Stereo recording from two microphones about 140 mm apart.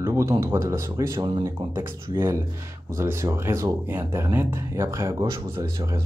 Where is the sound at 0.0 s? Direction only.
20° right (ahead or behind).